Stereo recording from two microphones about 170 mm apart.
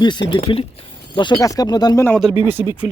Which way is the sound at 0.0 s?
25° left (ahead or behind).